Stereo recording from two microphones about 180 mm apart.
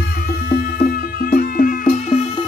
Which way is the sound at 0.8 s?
55° left (ahead or behind).